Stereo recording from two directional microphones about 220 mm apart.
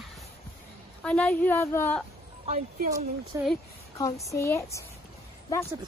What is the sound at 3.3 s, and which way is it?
Speech, 15° right (ahead or behind).